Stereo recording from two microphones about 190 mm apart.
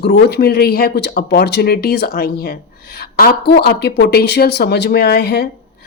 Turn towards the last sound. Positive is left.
turn(degrees=55)  # may be behind; listen again after turning